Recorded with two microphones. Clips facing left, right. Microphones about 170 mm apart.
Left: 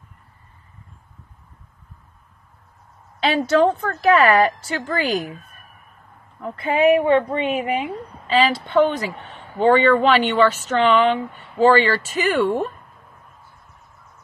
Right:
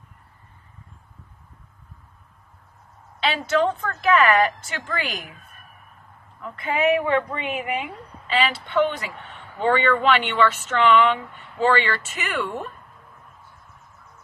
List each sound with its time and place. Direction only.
3.3 s speech: 35° left (ahead or behind)
6.4 s a woman's voice: 30° left (ahead or behind)